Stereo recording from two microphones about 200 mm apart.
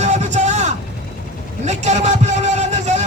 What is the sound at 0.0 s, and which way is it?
Vehicle, 35° right (ahead or behind).